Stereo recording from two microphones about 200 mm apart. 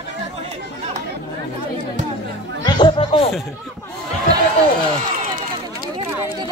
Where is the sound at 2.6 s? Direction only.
25° left (ahead or behind).